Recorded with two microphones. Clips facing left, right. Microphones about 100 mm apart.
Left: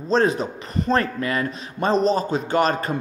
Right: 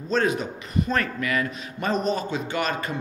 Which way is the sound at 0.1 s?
35° left (ahead or behind).